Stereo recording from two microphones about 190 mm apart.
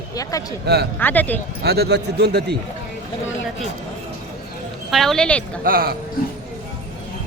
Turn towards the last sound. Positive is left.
turn(degrees=-50)  # may be behind; listen again after turning